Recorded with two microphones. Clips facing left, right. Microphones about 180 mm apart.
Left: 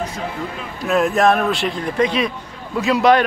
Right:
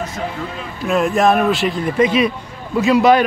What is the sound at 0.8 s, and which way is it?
A man's voice, centre (ahead or behind).